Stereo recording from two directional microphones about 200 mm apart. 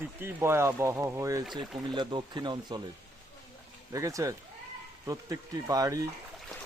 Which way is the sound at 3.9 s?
15° right (ahead or behind).